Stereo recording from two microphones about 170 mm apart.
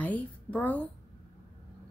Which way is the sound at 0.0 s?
10° left (ahead or behind).